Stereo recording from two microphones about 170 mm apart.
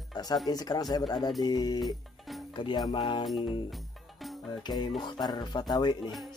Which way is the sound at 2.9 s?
25° left (ahead or behind).